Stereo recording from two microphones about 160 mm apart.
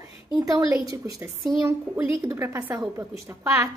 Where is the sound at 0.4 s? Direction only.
20° right (ahead or behind).